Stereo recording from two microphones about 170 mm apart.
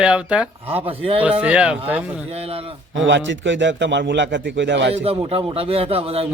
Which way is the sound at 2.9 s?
90° right.